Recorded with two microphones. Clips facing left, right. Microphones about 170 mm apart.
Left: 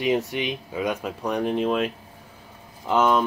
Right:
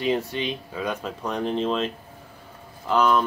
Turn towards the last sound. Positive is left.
turn(degrees=20)  # may be behind; listen again after turning